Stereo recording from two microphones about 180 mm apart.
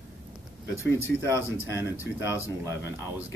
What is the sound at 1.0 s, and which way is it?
Speech, 15° left (ahead or behind).